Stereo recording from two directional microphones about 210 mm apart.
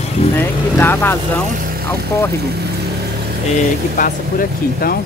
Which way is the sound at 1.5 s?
40° right (ahead or behind).